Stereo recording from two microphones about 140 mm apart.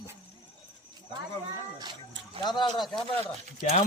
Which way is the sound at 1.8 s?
35° right (ahead or behind).